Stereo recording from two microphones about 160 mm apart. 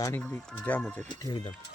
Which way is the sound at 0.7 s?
10° left (ahead or behind).